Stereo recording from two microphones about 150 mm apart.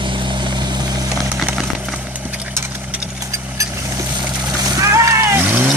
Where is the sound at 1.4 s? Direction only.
Centre (ahead or behind).